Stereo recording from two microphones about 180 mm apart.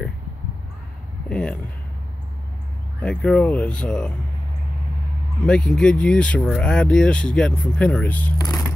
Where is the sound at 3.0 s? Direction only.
5° left (ahead or behind).